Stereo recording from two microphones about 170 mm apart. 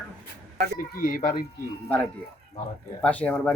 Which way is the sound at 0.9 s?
55° left (ahead or behind).